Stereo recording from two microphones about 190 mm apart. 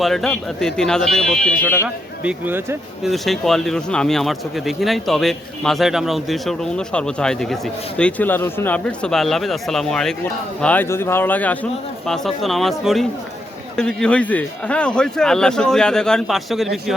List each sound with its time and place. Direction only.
0.0 s speech: centre (ahead or behind)
1.8 s speech: 10° right (ahead or behind)
3.0 s a man's voice: centre (ahead or behind)